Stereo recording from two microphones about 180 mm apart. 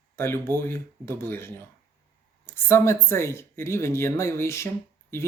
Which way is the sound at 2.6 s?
15° left (ahead or behind).